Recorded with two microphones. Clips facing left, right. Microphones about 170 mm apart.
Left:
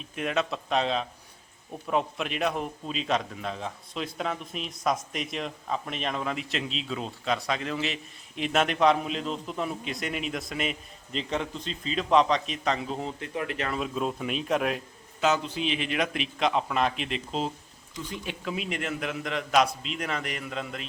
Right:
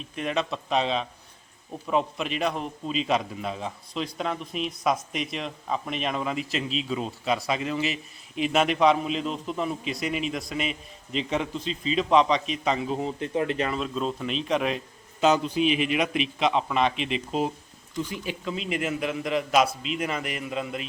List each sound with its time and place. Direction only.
0.0 s a man's voice: centre (ahead or behind)
13.1 s speech: 25° right (ahead or behind)
13.7 s speech: 10° left (ahead or behind)
15.2 s a man's voice: 20° right (ahead or behind)
15.6 s a man's voice: 30° left (ahead or behind)
16.4 s a man's voice: centre (ahead or behind)